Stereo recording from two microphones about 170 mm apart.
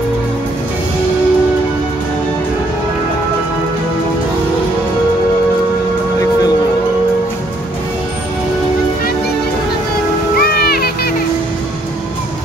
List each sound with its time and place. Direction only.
10.3 s music: 65° left (ahead or behind)